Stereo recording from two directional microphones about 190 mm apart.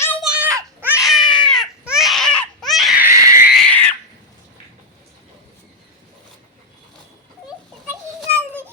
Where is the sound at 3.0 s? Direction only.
15° right (ahead or behind).